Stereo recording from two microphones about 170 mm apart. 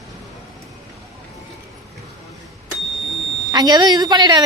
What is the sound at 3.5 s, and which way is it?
Speech, 25° right (ahead or behind).